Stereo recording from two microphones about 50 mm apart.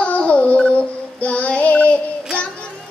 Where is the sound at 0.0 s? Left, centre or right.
Left.